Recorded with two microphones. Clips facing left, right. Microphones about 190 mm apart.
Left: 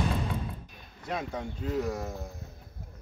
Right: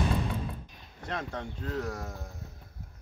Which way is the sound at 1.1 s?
10° left (ahead or behind).